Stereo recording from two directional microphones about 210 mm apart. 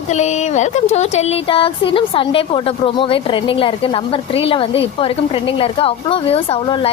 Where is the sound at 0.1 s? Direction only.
35° left (ahead or behind).